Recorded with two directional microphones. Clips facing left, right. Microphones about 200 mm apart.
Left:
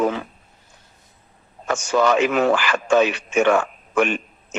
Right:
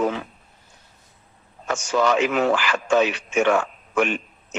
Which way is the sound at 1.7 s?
50° left (ahead or behind).